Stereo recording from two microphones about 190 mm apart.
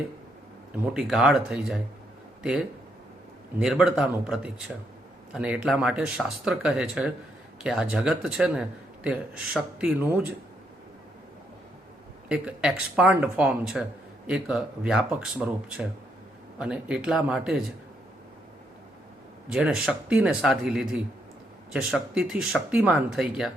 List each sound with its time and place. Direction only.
0.9 s speech: 5° right (ahead or behind)
3.6 s speech: 5° right (ahead or behind)
12.3 s speech: 5° right (ahead or behind)
19.5 s speech: 5° right (ahead or behind)